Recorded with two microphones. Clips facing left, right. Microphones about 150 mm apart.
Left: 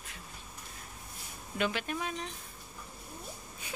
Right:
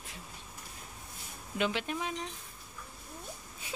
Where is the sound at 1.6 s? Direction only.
15° right (ahead or behind).